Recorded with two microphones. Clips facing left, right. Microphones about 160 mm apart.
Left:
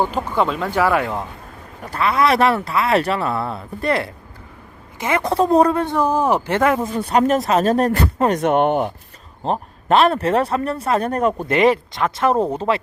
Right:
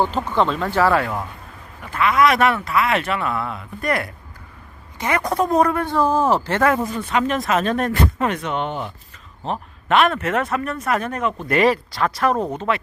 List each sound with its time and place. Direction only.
0.0 s speech: 10° left (ahead or behind)
1.8 s a man's voice: 35° left (ahead or behind); by 6.9 s 20° left (ahead or behind)
6.9 s speech: 40° left (ahead or behind); by 8.9 s 55° left (ahead or behind)
9.4 s speech: 35° left (ahead or behind)
11.4 s a man's voice: 20° left (ahead or behind)